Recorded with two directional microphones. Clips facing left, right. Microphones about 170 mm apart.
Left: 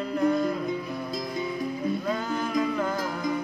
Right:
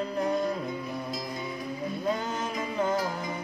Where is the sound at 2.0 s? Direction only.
25° right (ahead or behind).